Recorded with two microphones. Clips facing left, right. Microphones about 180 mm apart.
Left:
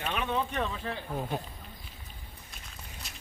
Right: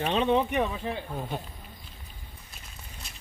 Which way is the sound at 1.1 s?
Centre (ahead or behind).